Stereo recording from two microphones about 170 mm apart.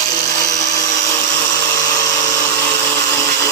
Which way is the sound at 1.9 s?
15° left (ahead or behind).